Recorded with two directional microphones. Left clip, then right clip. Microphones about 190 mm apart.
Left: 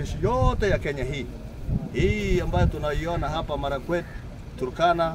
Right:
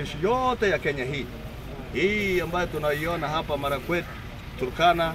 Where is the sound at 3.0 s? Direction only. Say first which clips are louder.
Right 1 dB; 30° left (ahead or behind).